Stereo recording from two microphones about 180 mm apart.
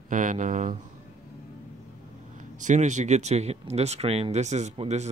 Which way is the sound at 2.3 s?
45° right (ahead or behind).